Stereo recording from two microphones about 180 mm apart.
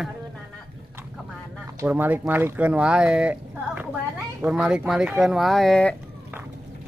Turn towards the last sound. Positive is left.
turn(degrees=5)  # may be behind; listen again after turning